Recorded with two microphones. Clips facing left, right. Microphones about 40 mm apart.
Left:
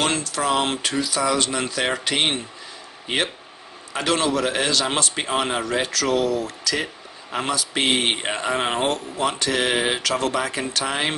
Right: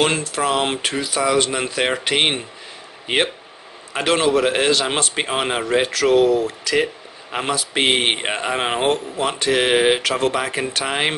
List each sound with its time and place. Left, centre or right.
0.0 s speech: right
3.9 s speech: right